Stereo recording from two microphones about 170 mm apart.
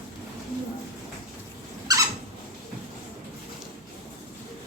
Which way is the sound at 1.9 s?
20° right (ahead or behind).